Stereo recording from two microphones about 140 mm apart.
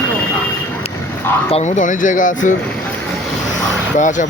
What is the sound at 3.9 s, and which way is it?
Speech, 65° left (ahead or behind).